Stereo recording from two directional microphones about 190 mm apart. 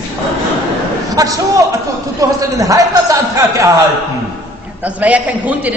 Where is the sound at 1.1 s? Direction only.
20° right (ahead or behind).